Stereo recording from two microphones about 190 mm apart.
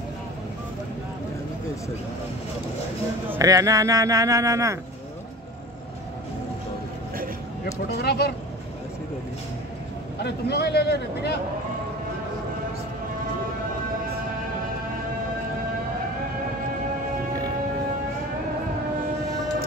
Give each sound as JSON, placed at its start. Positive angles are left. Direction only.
{"t": 3.3, "sound": "speech", "side_deg": -20}
{"t": 8.0, "sound": "a man's voice", "side_deg": 60}
{"t": 10.2, "sound": "a man's voice", "side_deg": 60}